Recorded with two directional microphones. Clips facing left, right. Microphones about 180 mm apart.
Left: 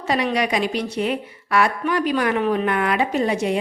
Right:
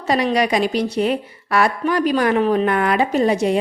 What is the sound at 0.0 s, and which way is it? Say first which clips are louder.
A woman's voice: right 3 dB; 35° right (ahead or behind).